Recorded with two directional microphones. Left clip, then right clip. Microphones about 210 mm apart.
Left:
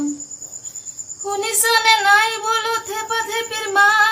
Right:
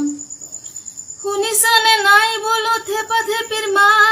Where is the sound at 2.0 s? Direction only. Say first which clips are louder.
Right 2 dB; 15° left (ahead or behind).